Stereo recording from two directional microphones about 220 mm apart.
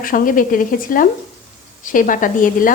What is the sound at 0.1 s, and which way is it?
A woman's voice, 40° left (ahead or behind).